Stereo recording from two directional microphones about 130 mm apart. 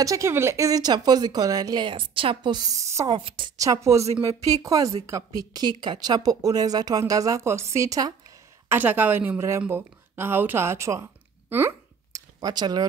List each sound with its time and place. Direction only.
0.0 s speech: 25° right (ahead or behind)
3.1 s a woman's voice: 40° right (ahead or behind)
3.5 s speech: 25° right (ahead or behind)
8.6 s speech: 15° right (ahead or behind)
12.4 s a woman's voice: 30° right (ahead or behind)